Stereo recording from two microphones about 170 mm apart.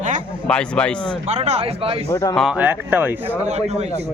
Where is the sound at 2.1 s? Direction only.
20° left (ahead or behind).